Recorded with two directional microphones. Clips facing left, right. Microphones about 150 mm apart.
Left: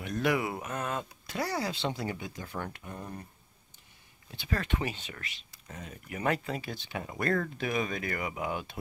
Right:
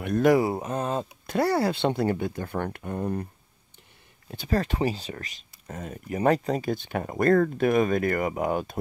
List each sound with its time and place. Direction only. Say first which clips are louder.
0.0 s mantra: right 9 dB; 55° right (ahead or behind)
0.3 s mantra: right 9 dB; 35° right (ahead or behind)
1.2 s speech: right 11 dB; 55° right (ahead or behind)
4.3 s speech: right 7 dB; 40° right (ahead or behind)